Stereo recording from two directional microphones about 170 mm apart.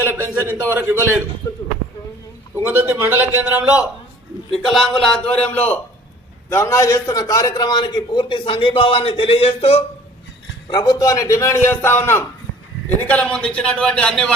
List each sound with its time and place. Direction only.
0.1 s a man's voice: 10° right (ahead or behind)
1.4 s a man's voice: 20° left (ahead or behind)
2.6 s a man's voice: 10° right (ahead or behind); by 9.8 s 35° left (ahead or behind)
10.7 s a man's voice: 25° left (ahead or behind); by 14.3 s 5° left (ahead or behind)